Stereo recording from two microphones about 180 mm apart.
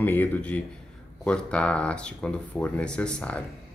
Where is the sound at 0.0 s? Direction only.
10° left (ahead or behind).